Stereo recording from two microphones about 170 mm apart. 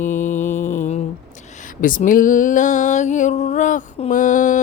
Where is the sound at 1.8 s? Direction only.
55° left (ahead or behind).